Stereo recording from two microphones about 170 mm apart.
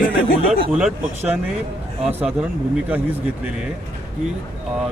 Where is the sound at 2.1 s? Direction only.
5° right (ahead or behind).